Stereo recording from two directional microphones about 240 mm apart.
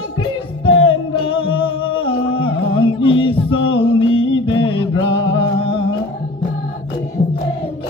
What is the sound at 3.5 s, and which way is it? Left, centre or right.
Music, left.